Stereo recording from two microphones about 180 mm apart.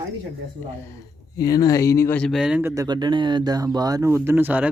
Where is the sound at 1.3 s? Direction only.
20° left (ahead or behind); by 2.7 s 5° right (ahead or behind).